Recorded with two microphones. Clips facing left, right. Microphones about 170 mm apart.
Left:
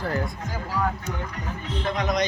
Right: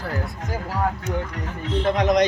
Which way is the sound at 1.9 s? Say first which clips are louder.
Right 6 dB; 80° right.